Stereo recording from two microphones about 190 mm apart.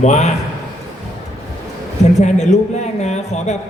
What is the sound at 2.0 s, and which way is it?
A man's voice, 35° left (ahead or behind).